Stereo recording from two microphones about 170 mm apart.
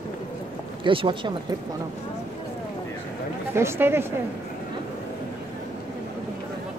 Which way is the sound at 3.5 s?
15° right (ahead or behind).